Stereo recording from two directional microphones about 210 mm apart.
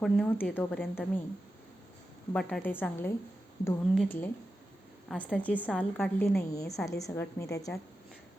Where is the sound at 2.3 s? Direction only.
5° left (ahead or behind).